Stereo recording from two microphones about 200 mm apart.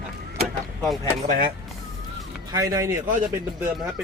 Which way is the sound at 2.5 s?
15° right (ahead or behind).